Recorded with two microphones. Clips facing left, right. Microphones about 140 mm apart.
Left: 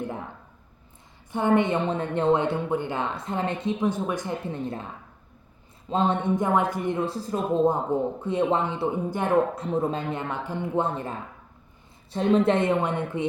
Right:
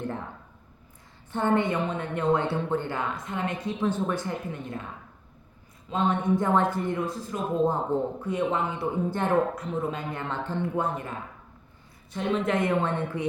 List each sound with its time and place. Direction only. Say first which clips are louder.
0.0 s a sound: left 1 dB; 15° left (ahead or behind)
1.3 s speech: left 3 dB; 10° left (ahead or behind)
3.2 s speech: left 3 dB; 30° left (ahead or behind); by 4.4 s 15° left (ahead or behind)
4.4 s speech: left 4 dB; 30° left (ahead or behind)
5.9 s speech: left 2 dB; 30° left (ahead or behind)
6.3 s a woman's voice: even; 15° left (ahead or behind)
7.0 s speech: left 3 dB; 30° left (ahead or behind)
7.6 s a woman's voice: left 1 dB; 15° left (ahead or behind)
8.2 s speech: left 3 dB; 30° left (ahead or behind)
9.0 s a woman's voice: left 1 dB; 10° left (ahead or behind)
9.6 s speech: left 4 dB; 30° left (ahead or behind)
12.1 s speech: left 5 dB; 35° left (ahead or behind); by 13.2 s 20° left (ahead or behind)